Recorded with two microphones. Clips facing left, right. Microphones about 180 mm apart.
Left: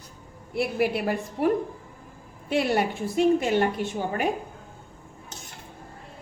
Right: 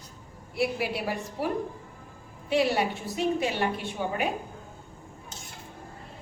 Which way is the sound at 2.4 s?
50° left (ahead or behind).